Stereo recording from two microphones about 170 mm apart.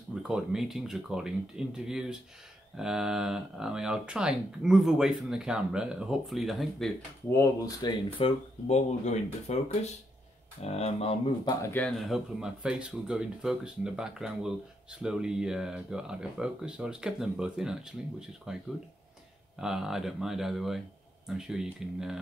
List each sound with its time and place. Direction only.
0.1 s speech: 5° right (ahead or behind)
7.3 s speech: 25° left (ahead or behind)
8.6 s speech: 40° left (ahead or behind)
11.4 s speech: 15° left (ahead or behind)
11.8 s speech: centre (ahead or behind)